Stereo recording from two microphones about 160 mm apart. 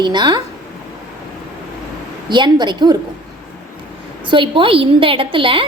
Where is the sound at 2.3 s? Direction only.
30° right (ahead or behind).